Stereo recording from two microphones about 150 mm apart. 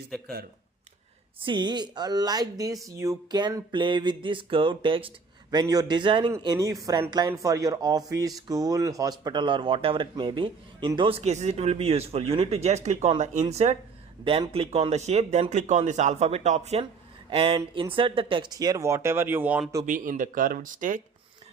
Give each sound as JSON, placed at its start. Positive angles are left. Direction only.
{"t": 0.1, "sound": "speech", "side_deg": 0}
{"t": 1.4, "sound": "speech", "side_deg": -30}
{"t": 19.8, "sound": "speech", "side_deg": -60}